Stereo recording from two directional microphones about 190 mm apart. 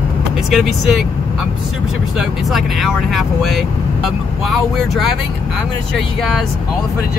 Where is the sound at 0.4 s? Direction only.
Centre (ahead or behind).